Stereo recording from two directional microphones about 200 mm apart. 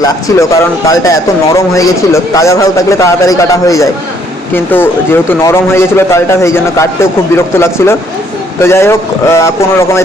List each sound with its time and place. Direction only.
0.0 s speech: 15° left (ahead or behind)